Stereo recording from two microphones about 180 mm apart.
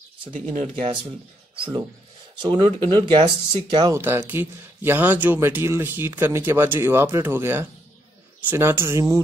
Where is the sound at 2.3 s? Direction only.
25° right (ahead or behind).